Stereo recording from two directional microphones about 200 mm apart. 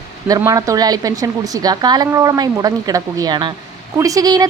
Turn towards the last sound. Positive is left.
turn(degrees=-20)  # may be behind; listen again after turning